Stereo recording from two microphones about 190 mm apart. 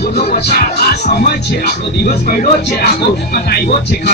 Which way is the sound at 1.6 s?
50° left (ahead or behind).